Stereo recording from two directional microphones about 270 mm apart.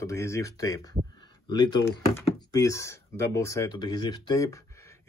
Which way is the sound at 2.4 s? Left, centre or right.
Centre.